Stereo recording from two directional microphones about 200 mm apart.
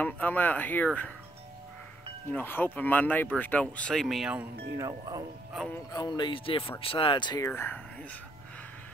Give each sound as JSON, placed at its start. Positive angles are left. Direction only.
{"t": 0.0, "sound": "speech", "side_deg": 10}
{"t": 2.3, "sound": "speech", "side_deg": 10}
{"t": 4.7, "sound": "speech", "side_deg": -15}
{"t": 5.9, "sound": "speech", "side_deg": 20}